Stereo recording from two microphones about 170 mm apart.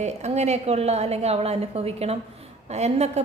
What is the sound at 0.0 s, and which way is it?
A woman's voice, 40° right (ahead or behind).